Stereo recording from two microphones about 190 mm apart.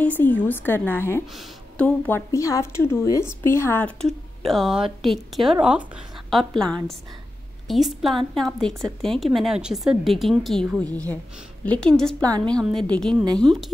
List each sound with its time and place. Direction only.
0.0 s a woman's voice: 10° left (ahead or behind)
1.2 s speech: centre (ahead or behind)
10.9 s a woman's voice: 20° right (ahead or behind)
11.6 s speech: 5° left (ahead or behind)
12.2 s a woman's voice: 20° right (ahead or behind)
12.4 s speech: 5° left (ahead or behind)